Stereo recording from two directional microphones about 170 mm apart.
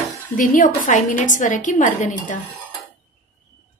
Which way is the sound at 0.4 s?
50° left (ahead or behind).